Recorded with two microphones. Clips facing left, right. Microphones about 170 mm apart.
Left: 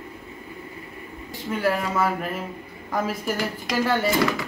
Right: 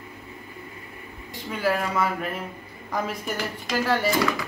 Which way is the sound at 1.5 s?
5° left (ahead or behind).